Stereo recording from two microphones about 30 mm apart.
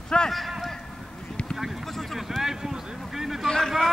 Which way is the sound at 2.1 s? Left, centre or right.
Centre.